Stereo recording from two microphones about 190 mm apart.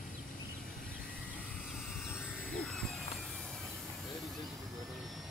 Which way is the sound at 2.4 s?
5° left (ahead or behind).